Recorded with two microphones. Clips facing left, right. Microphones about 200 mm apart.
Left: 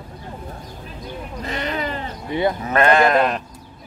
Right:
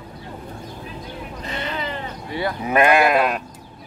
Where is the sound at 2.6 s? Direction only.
10° right (ahead or behind).